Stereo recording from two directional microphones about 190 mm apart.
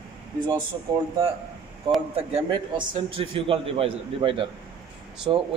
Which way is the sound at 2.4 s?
25° right (ahead or behind).